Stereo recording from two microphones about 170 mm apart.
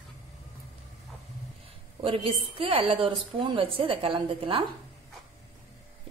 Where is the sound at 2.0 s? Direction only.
30° right (ahead or behind).